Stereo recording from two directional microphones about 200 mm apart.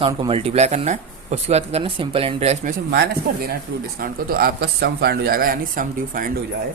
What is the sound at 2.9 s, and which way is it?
Speech, 50° right (ahead or behind).